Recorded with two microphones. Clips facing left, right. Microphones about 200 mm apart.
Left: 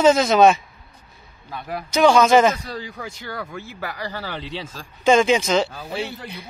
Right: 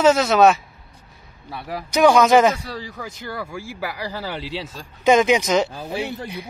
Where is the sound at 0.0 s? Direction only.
5° right (ahead or behind).